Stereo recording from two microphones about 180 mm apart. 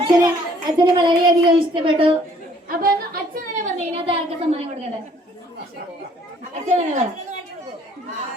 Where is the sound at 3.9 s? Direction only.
30° right (ahead or behind).